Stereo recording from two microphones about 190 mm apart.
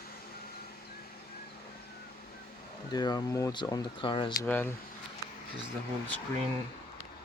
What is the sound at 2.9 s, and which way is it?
Speech, 20° left (ahead or behind).